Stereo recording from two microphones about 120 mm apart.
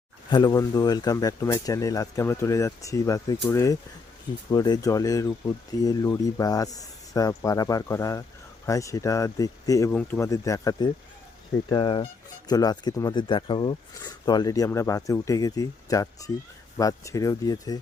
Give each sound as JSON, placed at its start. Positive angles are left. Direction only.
{"t": 0.3, "sound": "speech", "side_deg": 35}
{"t": 9.9, "sound": "speech", "side_deg": 10}
{"t": 10.2, "sound": "speech", "side_deg": 25}
{"t": 11.7, "sound": "speech", "side_deg": 45}
{"t": 12.5, "sound": "speech", "side_deg": 35}